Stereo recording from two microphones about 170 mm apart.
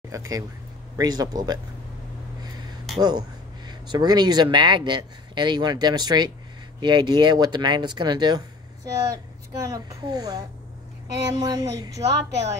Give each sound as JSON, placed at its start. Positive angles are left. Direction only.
{"t": 0.1, "sound": "speech", "side_deg": -20}
{"t": 3.0, "sound": "speech", "side_deg": -25}